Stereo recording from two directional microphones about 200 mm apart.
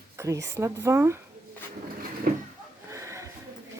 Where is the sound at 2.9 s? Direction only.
15° right (ahead or behind).